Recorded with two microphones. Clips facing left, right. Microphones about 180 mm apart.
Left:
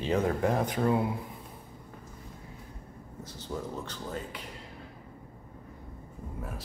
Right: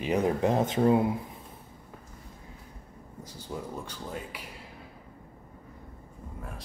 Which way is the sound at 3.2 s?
10° right (ahead or behind).